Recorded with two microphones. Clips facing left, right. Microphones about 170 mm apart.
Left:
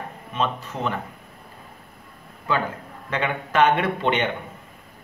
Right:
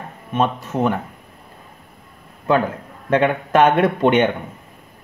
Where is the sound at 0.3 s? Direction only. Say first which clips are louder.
Right 6 dB; 50° right (ahead or behind).